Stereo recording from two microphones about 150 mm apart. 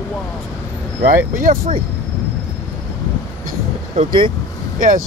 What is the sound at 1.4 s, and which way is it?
Speech, 65° right (ahead or behind).